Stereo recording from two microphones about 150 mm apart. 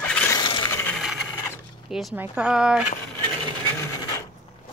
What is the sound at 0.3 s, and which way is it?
Coin, 30° left (ahead or behind).